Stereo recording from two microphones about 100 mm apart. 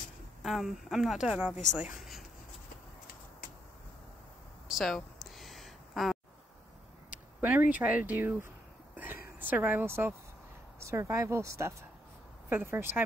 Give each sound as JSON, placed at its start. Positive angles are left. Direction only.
{"t": 0.4, "sound": "speech", "side_deg": -5}
{"t": 4.6, "sound": "a sound", "side_deg": 0}
{"t": 7.3, "sound": "speech", "side_deg": -15}